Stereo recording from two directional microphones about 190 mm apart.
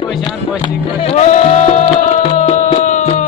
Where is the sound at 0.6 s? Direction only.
30° left (ahead or behind).